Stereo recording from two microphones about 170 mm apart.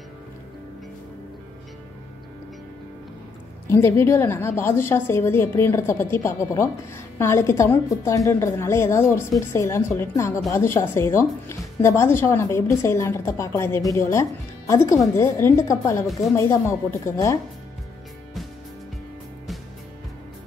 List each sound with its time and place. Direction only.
3.6 s a woman's voice: 15° left (ahead or behind)